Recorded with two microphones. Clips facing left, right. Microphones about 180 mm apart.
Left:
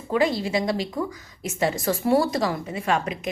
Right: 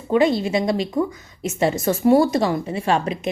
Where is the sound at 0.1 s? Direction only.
25° right (ahead or behind).